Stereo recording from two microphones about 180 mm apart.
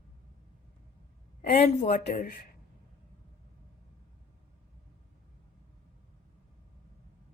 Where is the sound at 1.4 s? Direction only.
40° left (ahead or behind).